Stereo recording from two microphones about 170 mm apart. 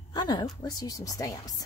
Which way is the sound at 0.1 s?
25° left (ahead or behind).